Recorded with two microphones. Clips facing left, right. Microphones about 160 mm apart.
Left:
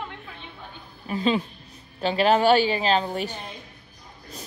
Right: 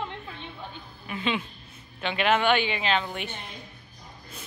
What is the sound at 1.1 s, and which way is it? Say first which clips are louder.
A woman's voice: left 6 dB; 35° left (ahead or behind).